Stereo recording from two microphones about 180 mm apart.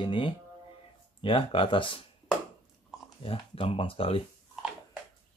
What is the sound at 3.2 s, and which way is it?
Speech, 30° left (ahead or behind).